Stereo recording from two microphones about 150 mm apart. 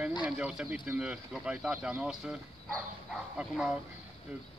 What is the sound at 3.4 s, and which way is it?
Speech, 5° right (ahead or behind).